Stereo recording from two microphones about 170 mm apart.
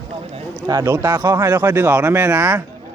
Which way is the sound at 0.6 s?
20° right (ahead or behind).